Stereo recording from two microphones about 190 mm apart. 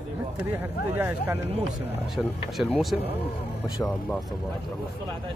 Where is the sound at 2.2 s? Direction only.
Centre (ahead or behind).